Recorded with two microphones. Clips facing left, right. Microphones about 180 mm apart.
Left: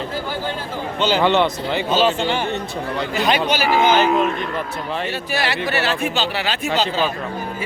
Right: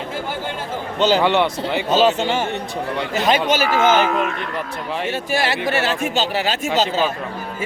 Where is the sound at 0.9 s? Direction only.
40° right (ahead or behind).